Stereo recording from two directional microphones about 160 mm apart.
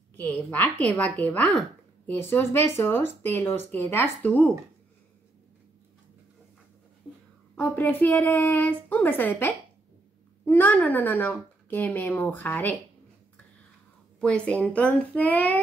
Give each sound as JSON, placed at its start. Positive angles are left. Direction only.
{"t": 0.2, "sound": "speech", "side_deg": 10}
{"t": 7.5, "sound": "speech", "side_deg": 10}
{"t": 14.2, "sound": "speech", "side_deg": 5}